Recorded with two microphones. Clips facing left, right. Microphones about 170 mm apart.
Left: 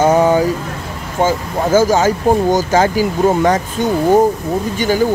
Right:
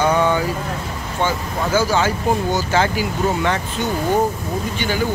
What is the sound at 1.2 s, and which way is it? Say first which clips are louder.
Speech: left 6 dB; 45° left (ahead or behind).